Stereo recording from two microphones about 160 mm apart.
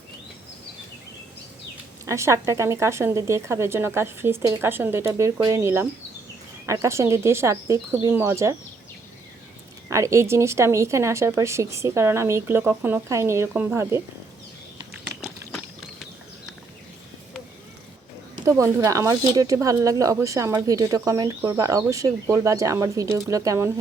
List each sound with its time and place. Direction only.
2.0 s speech: 20° right (ahead or behind)
9.9 s speech: 20° right (ahead or behind)
18.4 s speech: 20° right (ahead or behind)